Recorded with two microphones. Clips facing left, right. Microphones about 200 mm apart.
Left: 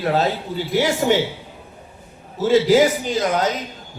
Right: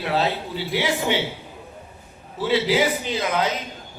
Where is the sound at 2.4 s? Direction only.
45° left (ahead or behind).